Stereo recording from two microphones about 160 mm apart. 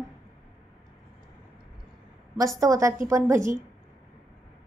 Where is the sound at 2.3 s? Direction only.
20° right (ahead or behind).